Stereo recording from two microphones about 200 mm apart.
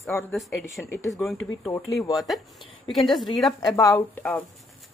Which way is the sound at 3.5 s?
15° left (ahead or behind).